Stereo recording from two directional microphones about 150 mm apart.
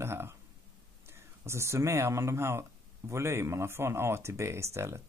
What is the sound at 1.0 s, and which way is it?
Speech, 15° right (ahead or behind).